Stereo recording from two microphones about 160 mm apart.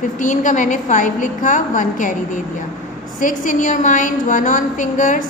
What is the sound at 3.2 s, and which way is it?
A woman's voice, 55° left (ahead or behind).